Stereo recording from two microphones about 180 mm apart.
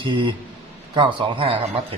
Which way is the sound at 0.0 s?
25° right (ahead or behind).